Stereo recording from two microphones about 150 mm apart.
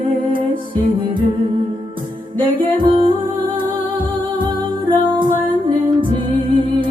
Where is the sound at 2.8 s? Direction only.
35° right (ahead or behind).